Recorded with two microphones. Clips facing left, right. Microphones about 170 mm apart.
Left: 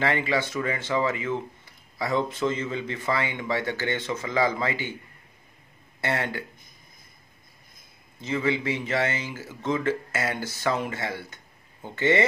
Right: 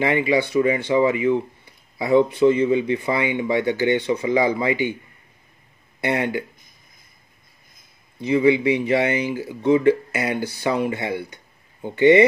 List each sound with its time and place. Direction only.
0.0 s speech: 15° right (ahead or behind)
5.9 s speech: 15° right (ahead or behind)
8.2 s speech: 15° right (ahead or behind)